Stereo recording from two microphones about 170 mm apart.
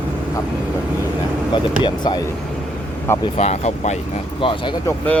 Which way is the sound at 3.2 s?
40° left (ahead or behind).